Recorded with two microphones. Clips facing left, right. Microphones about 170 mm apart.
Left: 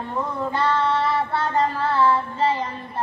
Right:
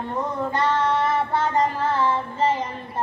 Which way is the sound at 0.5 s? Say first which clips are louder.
Even; 15° right (ahead or behind).